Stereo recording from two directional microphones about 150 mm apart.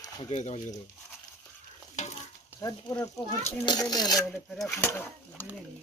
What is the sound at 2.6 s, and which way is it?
Speech, 25° left (ahead or behind).